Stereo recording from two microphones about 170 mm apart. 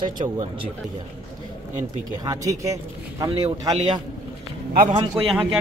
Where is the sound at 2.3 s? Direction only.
20° right (ahead or behind).